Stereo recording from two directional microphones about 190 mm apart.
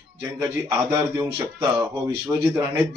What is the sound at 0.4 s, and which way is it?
Speech, 10° right (ahead or behind).